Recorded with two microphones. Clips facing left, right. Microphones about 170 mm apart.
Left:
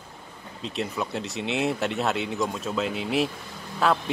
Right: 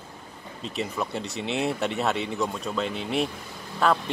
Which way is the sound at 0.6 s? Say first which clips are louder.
Even; centre (ahead or behind).